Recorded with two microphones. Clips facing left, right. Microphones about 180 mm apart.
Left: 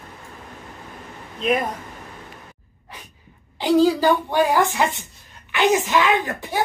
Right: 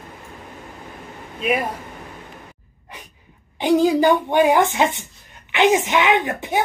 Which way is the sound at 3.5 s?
20° right (ahead or behind).